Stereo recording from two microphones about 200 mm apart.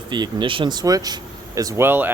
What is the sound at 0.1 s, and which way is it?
Speech, 20° right (ahead or behind).